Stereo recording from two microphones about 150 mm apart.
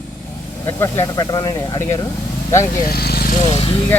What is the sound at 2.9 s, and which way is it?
Speech, 90° left.